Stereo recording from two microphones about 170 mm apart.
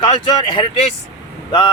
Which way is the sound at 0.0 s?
25° left (ahead or behind).